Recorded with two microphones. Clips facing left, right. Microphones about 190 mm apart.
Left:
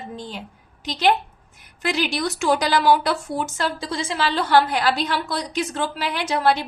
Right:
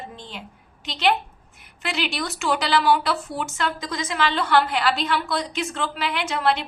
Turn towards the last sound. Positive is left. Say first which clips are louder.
# left 2 dB
turn(degrees=35)  # may be behind; listen again after turning